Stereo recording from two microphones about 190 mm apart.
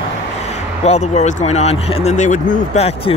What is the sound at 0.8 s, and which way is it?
Speech, 35° left (ahead or behind).